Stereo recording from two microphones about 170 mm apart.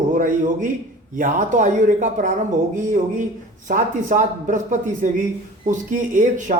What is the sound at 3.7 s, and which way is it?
Speech, 50° right (ahead or behind).